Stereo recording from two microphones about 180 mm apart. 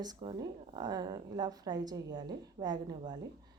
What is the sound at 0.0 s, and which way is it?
Speech, 25° right (ahead or behind).